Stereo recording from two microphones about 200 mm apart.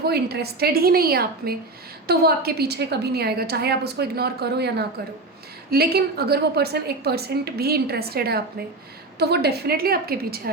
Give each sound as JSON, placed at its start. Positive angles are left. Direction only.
{"t": 0.0, "sound": "a woman's voice", "side_deg": -55}